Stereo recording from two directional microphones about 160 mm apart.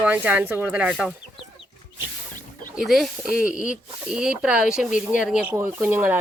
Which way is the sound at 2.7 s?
Centre (ahead or behind).